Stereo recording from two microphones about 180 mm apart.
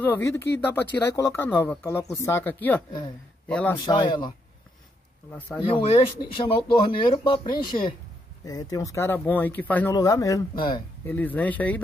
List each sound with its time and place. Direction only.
0.7 s speech: 10° left (ahead or behind)
5.6 s speech: 30° left (ahead or behind); by 9.9 s 10° left (ahead or behind)
9.9 s speech: 20° left (ahead or behind)
11.1 s speech: 10° left (ahead or behind)